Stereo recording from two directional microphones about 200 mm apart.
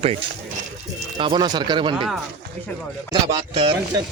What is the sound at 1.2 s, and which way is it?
Speech, 25° right (ahead or behind).